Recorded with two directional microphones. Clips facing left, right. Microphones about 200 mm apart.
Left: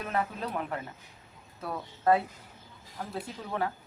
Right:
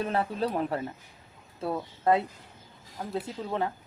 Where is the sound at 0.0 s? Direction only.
30° right (ahead or behind).